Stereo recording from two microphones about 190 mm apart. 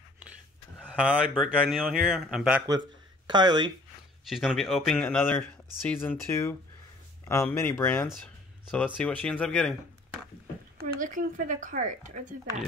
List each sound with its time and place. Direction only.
0.7 s speech: 5° right (ahead or behind)
3.3 s speech: 25° right (ahead or behind)
4.3 s speech: centre (ahead or behind)
10.8 s speech: 45° right (ahead or behind)